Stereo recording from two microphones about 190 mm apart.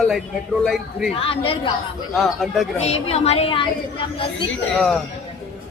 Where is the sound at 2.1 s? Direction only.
Centre (ahead or behind).